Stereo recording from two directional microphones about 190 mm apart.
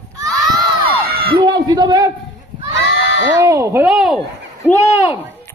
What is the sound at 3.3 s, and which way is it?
Speech, 15° right (ahead or behind).